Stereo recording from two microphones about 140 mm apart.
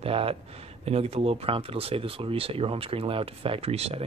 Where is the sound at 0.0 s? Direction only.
45° right (ahead or behind).